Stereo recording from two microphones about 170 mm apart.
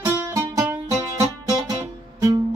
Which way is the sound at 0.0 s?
15° right (ahead or behind).